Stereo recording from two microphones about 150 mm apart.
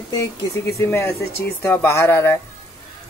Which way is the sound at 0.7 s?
15° left (ahead or behind).